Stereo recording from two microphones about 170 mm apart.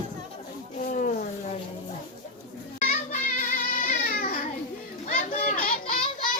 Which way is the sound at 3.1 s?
50° left (ahead or behind).